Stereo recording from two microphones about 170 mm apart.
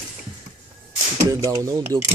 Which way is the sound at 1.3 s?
20° right (ahead or behind).